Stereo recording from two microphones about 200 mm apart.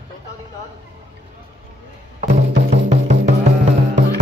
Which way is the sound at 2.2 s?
35° right (ahead or behind).